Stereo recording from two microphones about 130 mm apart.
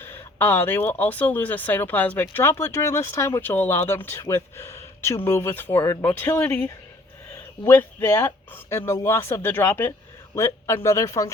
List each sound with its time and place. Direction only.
0.0 s a man's voice: 15° left (ahead or behind)